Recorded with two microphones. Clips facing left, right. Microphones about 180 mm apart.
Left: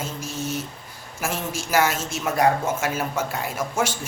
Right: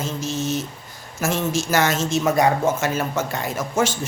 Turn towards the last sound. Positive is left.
turn(degrees=10)  # may be behind; listen again after turning